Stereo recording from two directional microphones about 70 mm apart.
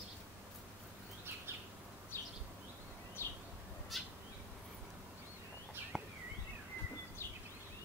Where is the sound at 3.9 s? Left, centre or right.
Centre.